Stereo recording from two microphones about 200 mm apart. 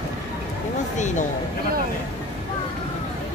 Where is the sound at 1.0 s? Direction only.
35° left (ahead or behind).